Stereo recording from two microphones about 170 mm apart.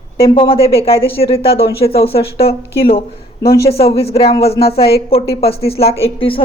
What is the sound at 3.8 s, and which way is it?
A woman's voice, 35° left (ahead or behind).